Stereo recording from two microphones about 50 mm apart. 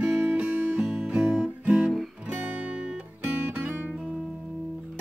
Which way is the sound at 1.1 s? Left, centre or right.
Right.